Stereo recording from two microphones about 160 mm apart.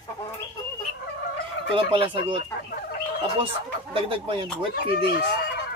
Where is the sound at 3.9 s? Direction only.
35° right (ahead or behind).